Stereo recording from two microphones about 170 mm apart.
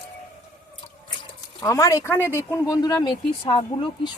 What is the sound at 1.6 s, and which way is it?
Speech, 20° left (ahead or behind).